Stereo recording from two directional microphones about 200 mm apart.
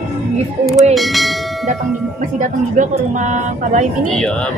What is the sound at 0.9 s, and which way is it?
Speech, centre (ahead or behind).